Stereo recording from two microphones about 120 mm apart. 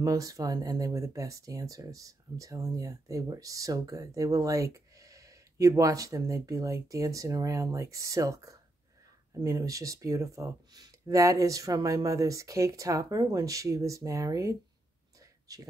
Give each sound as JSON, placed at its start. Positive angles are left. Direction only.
{"t": 0.0, "sound": "speech", "side_deg": -30}